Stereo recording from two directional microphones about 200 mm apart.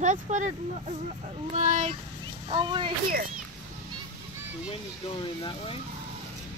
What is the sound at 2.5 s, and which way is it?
Speech, 25° right (ahead or behind).